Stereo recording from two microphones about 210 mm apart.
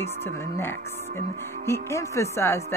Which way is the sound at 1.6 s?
15° left (ahead or behind).